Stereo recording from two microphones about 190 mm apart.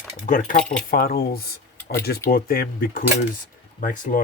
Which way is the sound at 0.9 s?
50° left (ahead or behind).